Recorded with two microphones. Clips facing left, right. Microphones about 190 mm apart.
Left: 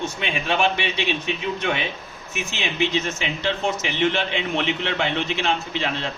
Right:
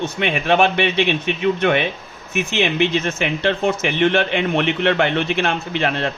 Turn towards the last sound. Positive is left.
turn(degrees=-60)  # may be behind; listen again after turning